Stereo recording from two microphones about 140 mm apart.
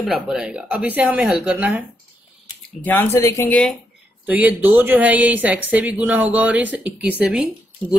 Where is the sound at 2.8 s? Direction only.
15° left (ahead or behind).